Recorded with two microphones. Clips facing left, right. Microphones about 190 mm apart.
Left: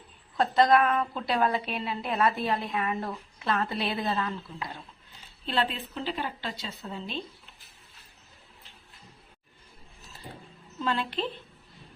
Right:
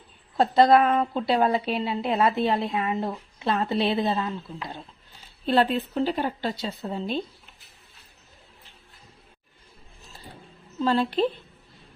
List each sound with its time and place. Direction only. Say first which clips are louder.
0.3 s a woman's voice: right 4 dB; 30° right (ahead or behind)
5.5 s speech: right 8 dB; 45° right (ahead or behind)
10.8 s speech: right 8 dB; 35° right (ahead or behind)